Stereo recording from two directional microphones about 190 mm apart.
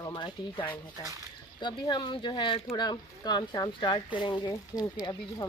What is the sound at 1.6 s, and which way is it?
Speech, 25° left (ahead or behind).